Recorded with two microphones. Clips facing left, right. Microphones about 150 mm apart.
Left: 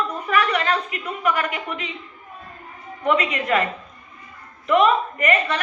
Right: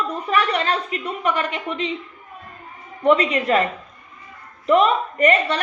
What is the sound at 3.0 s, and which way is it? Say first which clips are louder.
Speech: right 4 dB; 35° right (ahead or behind).